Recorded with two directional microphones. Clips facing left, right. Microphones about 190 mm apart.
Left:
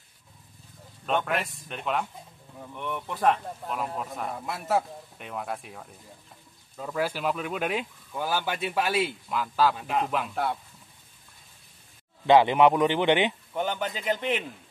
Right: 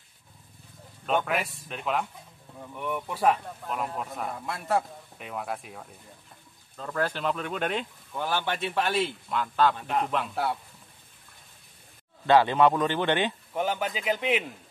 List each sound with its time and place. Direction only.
1.0 s speech: centre (ahead or behind)
12.3 s speech: 15° left (ahead or behind)
13.6 s a man's voice: 5° right (ahead or behind)